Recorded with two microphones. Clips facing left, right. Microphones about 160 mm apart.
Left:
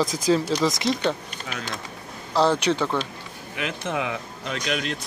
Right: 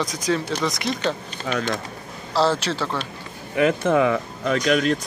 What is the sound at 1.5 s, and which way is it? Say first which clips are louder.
Speech: right 10 dB; 45° right (ahead or behind).